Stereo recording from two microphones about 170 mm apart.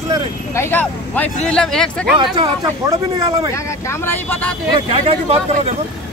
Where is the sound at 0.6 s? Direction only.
10° left (ahead or behind).